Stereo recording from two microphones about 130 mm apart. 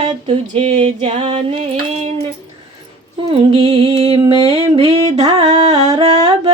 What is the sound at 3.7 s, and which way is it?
Music, 55° right (ahead or behind).